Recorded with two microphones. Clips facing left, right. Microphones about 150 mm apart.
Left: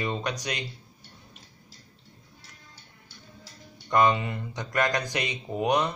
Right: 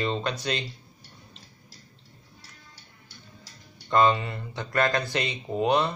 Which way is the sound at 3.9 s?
15° left (ahead or behind).